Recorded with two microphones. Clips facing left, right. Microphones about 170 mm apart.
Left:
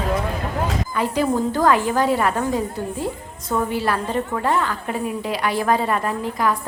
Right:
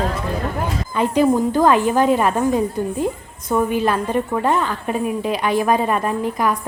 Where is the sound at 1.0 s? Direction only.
20° right (ahead or behind).